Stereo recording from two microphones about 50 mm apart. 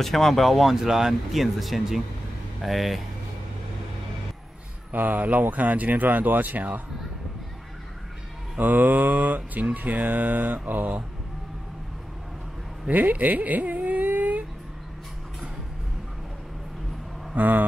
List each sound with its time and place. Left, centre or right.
0.0 s speech: centre
4.9 s mantra: right
8.5 s mantra: right
12.8 s a sound: right
17.4 s mantra: right